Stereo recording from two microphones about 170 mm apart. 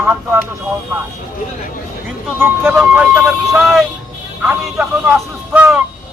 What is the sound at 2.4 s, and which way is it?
A man's voice, 10° right (ahead or behind).